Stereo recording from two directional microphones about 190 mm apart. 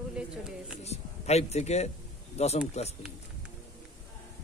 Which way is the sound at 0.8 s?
35° left (ahead or behind).